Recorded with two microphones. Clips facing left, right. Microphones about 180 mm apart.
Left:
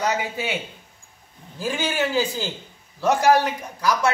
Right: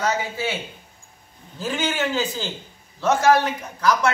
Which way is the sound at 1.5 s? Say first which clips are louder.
Even; 10° left (ahead or behind).